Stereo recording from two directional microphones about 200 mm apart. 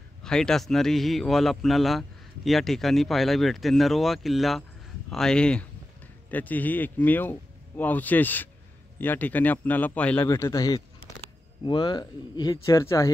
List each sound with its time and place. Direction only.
0.2 s a man's voice: 5° left (ahead or behind)